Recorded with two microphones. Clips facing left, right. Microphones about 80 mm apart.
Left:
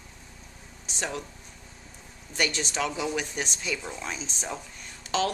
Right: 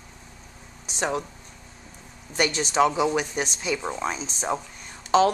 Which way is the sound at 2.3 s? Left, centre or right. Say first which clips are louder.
Right 7 dB; right.